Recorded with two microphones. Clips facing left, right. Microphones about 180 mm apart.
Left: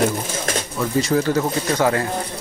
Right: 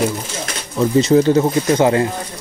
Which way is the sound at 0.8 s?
20° right (ahead or behind).